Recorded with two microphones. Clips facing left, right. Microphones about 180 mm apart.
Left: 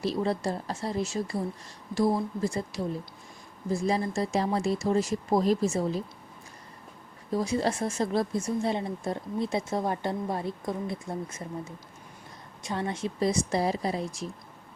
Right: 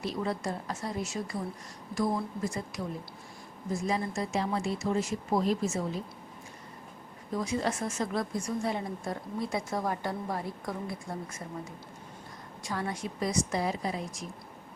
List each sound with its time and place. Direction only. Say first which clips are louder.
0.0 s a woman's voice: left 4 dB; 35° left (ahead or behind)
7.3 s a woman's voice: left 4 dB; 35° left (ahead or behind)
12.6 s a woman's voice: left 3 dB; 25° left (ahead or behind)